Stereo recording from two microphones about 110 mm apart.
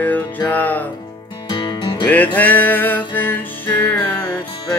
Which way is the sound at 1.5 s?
45° left (ahead or behind).